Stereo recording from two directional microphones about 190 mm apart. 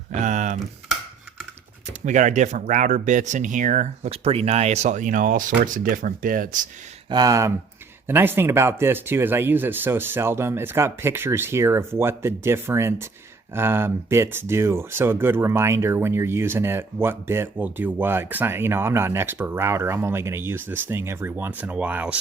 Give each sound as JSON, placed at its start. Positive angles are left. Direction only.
{"t": 0.1, "sound": "a sound", "side_deg": -40}
{"t": 2.0, "sound": "speech", "side_deg": -40}
{"t": 7.1, "sound": "speech", "side_deg": -20}